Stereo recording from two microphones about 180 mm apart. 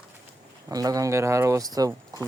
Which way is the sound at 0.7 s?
20° right (ahead or behind).